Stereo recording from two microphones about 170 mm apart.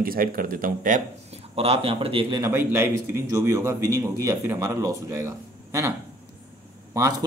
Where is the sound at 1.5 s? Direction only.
35° right (ahead or behind).